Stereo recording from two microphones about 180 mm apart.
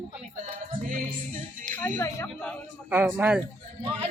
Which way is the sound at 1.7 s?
10° left (ahead or behind).